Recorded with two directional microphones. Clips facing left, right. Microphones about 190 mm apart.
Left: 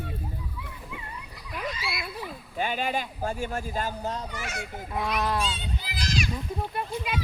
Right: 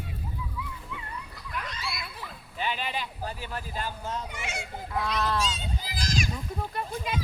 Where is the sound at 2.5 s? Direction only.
45° left (ahead or behind).